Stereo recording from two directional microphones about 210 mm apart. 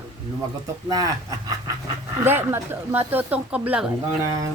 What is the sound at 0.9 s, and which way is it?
Speech, 15° right (ahead or behind).